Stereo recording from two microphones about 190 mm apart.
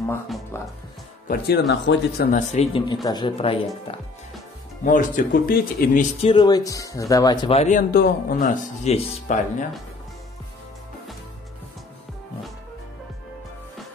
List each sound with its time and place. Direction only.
1.2 s speech: 50° left (ahead or behind)
1.7 s speech: 60° left (ahead or behind)
2.3 s speech: 35° left (ahead or behind)
2.9 s a man's voice: 20° left (ahead or behind)
4.8 s speech: 45° left (ahead or behind)
6.2 s speech: 20° left (ahead or behind)
7.4 s speech: 35° left (ahead or behind)